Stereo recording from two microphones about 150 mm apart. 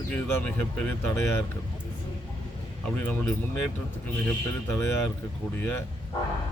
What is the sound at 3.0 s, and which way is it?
Speech, 10° left (ahead or behind).